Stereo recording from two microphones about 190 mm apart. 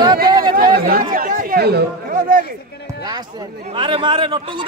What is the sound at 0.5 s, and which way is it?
Speech, 50° right (ahead or behind).